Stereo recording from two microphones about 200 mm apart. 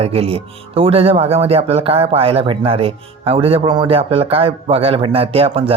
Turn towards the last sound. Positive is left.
turn(degrees=-30)  # may be behind; listen again after turning